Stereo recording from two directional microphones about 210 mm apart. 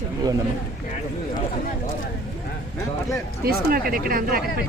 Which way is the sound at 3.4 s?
45° right (ahead or behind).